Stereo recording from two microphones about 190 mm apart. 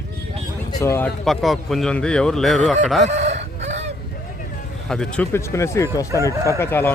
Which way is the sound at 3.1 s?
35° right (ahead or behind).